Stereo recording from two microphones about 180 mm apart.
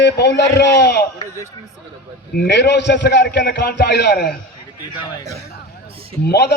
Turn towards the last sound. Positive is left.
turn(degrees=65)  # may be behind; listen again after turning